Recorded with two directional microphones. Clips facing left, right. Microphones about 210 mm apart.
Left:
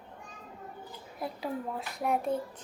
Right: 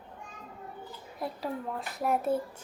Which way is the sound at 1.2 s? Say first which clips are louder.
Even; centre (ahead or behind).